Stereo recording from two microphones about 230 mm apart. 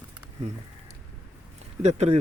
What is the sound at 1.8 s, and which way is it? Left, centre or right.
Speech, right.